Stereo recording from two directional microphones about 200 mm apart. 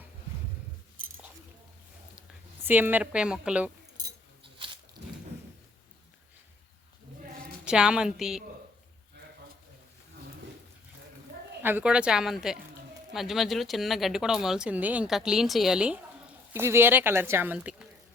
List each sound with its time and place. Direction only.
2.6 s a woman's voice: 10° right (ahead or behind)
3.9 s a sound: 20° right (ahead or behind)
7.6 s speech: 5° right (ahead or behind)
11.6 s speech: 10° right (ahead or behind)